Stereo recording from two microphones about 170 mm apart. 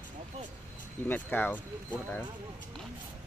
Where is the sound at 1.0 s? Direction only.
10° left (ahead or behind).